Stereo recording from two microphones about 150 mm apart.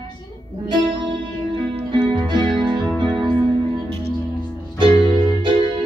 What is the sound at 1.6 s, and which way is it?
Music, 40° right (ahead or behind).